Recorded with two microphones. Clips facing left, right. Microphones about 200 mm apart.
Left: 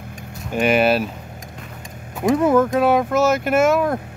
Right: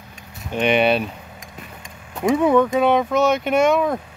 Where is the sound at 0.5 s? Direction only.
5° left (ahead or behind).